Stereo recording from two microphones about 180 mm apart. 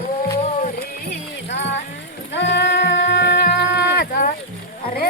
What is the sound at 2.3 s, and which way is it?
Sheep, 75° left (ahead or behind).